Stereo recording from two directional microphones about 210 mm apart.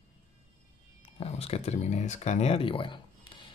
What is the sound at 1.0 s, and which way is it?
Speech, 25° left (ahead or behind).